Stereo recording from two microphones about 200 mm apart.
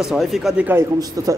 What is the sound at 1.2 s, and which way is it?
Speech, 15° right (ahead or behind).